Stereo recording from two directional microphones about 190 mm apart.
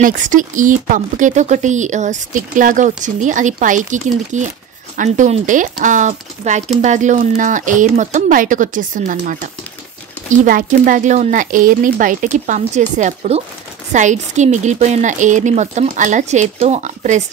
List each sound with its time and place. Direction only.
0.0 s speech: 45° right (ahead or behind)